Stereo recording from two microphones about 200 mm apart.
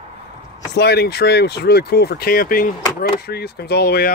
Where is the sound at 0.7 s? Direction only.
55° left (ahead or behind).